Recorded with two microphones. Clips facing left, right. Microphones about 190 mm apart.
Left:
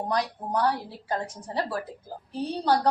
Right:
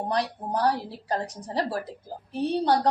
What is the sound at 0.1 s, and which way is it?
A woman's voice, 35° right (ahead or behind).